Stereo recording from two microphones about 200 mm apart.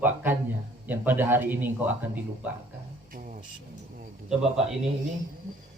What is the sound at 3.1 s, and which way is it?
Vehicle, 40° right (ahead or behind).